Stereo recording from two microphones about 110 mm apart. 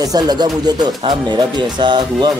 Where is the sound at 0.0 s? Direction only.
35° right (ahead or behind).